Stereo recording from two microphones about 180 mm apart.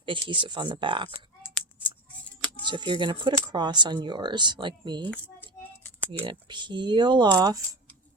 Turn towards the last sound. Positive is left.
turn(degrees=-20)  # may be behind; listen again after turning